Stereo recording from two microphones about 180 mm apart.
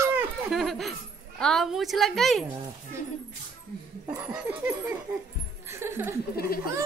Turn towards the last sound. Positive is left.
turn(degrees=55)  # may be behind; listen again after turning